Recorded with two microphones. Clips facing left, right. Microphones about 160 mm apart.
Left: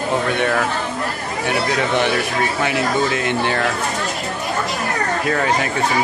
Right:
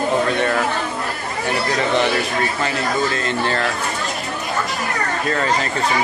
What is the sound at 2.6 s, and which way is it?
Speech, 10° left (ahead or behind).